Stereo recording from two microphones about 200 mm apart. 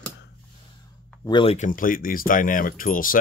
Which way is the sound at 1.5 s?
40° left (ahead or behind).